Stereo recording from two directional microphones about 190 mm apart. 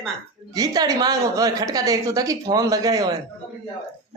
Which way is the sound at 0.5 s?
20° right (ahead or behind).